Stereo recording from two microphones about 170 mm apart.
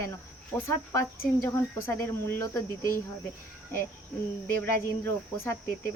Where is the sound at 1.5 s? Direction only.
15° left (ahead or behind).